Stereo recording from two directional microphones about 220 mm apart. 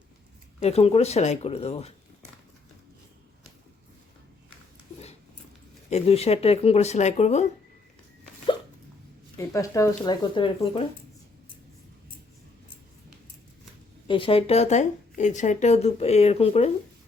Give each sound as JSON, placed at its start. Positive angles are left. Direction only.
{"t": 0.6, "sound": "speech", "side_deg": 30}
{"t": 5.9, "sound": "speech", "side_deg": 30}
{"t": 9.4, "sound": "speech", "side_deg": 15}
{"t": 14.1, "sound": "speech", "side_deg": 25}